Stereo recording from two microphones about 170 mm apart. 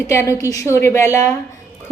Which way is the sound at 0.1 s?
15° left (ahead or behind).